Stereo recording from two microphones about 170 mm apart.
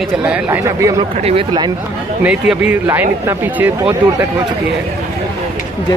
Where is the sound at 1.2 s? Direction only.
30° right (ahead or behind).